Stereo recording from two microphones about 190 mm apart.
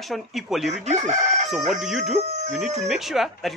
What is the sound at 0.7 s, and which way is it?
Chicken, 35° right (ahead or behind).